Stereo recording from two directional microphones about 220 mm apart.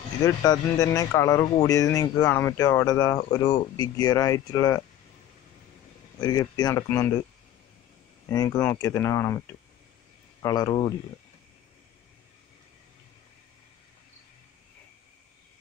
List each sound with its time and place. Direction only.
0.2 s speech: 15° left (ahead or behind)
6.2 s speech: 15° left (ahead or behind)
8.5 s speech: 10° left (ahead or behind)
10.4 s speech: 15° left (ahead or behind)